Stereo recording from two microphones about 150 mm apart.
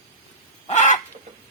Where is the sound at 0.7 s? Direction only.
50° left (ahead or behind).